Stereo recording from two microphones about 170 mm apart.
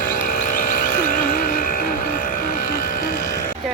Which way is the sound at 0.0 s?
50° left (ahead or behind).